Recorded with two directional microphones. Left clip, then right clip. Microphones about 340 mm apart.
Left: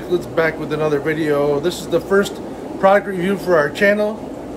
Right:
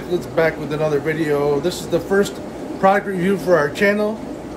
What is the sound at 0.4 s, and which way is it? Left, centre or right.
Speech, centre.